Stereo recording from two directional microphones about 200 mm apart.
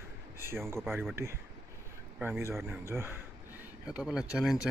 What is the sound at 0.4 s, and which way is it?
A man's voice, 10° right (ahead or behind).